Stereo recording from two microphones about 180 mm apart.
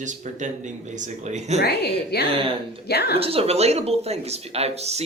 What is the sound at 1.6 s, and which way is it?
A woman's voice, 65° left (ahead or behind).